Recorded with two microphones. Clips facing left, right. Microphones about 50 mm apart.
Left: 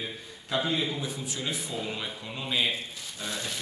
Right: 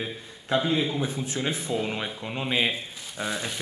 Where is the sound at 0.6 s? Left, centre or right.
Centre.